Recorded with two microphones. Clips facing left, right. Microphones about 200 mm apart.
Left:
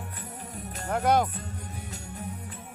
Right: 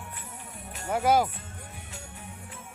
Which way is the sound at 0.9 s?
5° right (ahead or behind).